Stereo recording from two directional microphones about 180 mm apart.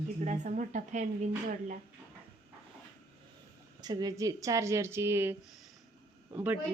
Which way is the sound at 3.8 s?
20° right (ahead or behind).